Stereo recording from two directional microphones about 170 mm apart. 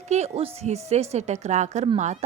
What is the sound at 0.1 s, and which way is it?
A woman's voice, 40° right (ahead or behind).